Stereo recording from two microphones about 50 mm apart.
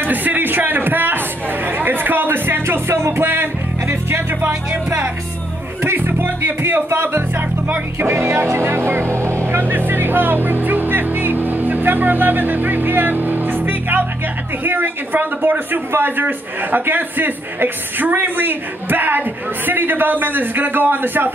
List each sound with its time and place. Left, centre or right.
0.0 s speech: right
1.8 s music: right
4.8 s music: right
5.8 s speech: right
9.5 s a man's voice: right